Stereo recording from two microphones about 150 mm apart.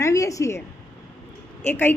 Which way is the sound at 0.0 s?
20° left (ahead or behind).